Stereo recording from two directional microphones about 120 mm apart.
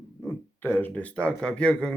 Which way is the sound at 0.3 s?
15° left (ahead or behind).